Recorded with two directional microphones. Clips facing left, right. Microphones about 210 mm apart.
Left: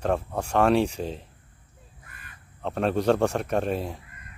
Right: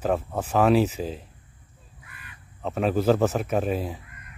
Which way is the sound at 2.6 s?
Centre (ahead or behind).